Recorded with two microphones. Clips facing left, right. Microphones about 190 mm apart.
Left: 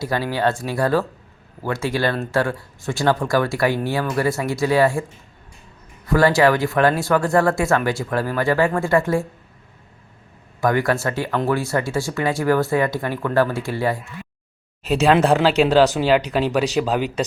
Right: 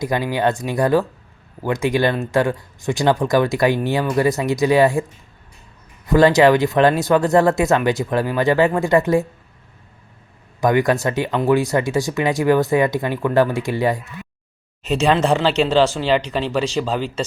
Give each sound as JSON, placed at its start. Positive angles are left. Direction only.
{"t": 0.0, "sound": "speech", "side_deg": -15}
{"t": 6.1, "sound": "speech", "side_deg": -20}
{"t": 10.6, "sound": "speech", "side_deg": -20}
{"t": 14.8, "sound": "speech", "side_deg": 10}